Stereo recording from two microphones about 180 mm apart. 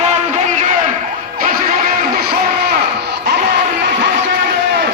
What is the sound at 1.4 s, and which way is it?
Music, 50° right (ahead or behind).